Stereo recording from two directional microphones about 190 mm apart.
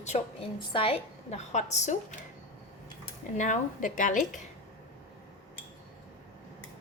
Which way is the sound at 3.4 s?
40° left (ahead or behind).